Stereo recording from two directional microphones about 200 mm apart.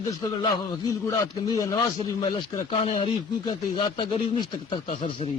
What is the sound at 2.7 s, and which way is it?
Speech, 25° left (ahead or behind).